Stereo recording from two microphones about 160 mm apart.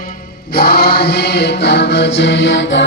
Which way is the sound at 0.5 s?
85° left.